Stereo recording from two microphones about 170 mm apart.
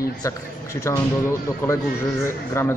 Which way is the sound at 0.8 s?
15° left (ahead or behind).